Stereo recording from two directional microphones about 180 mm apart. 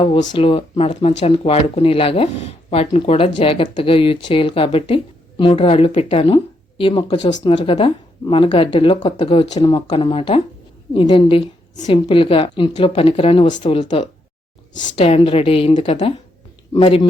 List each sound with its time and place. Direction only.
0.0 s speech: 30° left (ahead or behind)